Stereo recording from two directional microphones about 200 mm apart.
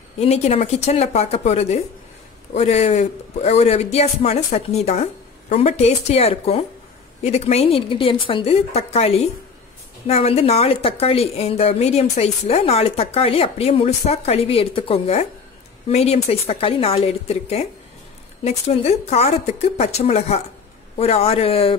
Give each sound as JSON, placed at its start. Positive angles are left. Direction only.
{"t": 0.2, "sound": "a woman's voice", "side_deg": 30}